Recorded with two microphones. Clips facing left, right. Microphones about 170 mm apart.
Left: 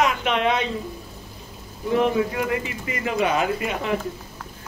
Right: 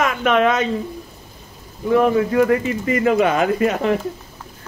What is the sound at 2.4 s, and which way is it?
Speech, 45° right (ahead or behind).